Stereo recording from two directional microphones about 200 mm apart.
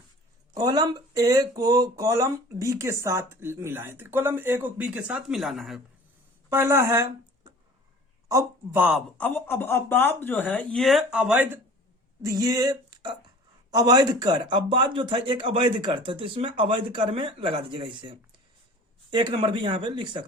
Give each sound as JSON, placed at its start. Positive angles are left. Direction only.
{"t": 0.5, "sound": "speech", "side_deg": -20}
{"t": 6.5, "sound": "speech", "side_deg": -15}
{"t": 9.1, "sound": "speech", "side_deg": 10}
{"t": 12.2, "sound": "a man's voice", "side_deg": -15}